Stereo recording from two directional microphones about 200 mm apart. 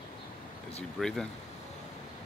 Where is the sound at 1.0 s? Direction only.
Centre (ahead or behind).